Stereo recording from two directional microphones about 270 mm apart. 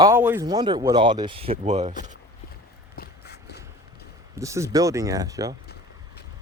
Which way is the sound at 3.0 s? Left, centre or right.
Left.